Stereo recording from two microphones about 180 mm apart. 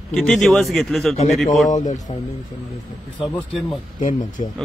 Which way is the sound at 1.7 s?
45° left (ahead or behind).